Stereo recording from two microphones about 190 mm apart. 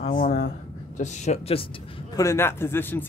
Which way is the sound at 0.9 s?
40° left (ahead or behind).